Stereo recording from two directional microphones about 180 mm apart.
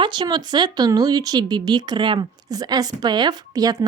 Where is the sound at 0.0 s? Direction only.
25° right (ahead or behind).